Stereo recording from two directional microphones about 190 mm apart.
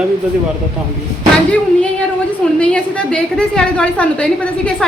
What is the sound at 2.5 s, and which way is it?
A woman's voice, 5° left (ahead or behind).